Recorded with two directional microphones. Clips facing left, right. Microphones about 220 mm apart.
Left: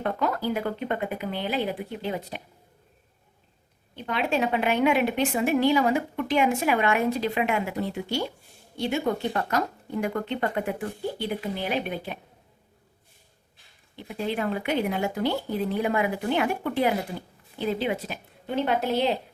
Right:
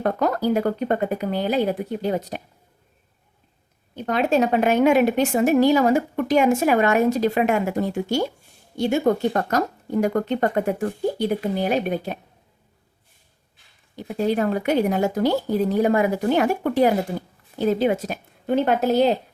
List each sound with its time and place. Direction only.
0.0 s speech: 40° right (ahead or behind)
3.9 s speech: 45° right (ahead or behind)
13.9 s speech: 45° right (ahead or behind)